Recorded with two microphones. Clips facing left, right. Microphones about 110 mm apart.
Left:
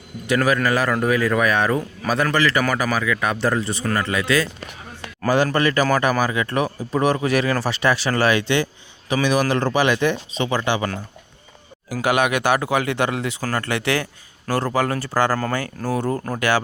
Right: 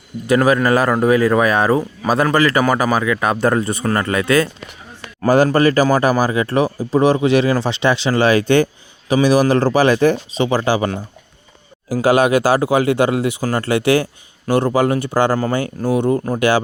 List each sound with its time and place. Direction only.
0.3 s speech: 30° right (ahead or behind); by 4.4 s 45° right (ahead or behind)
5.5 s speech: 35° right (ahead or behind)
11.9 s speech: 35° right (ahead or behind); by 16.4 s 15° right (ahead or behind)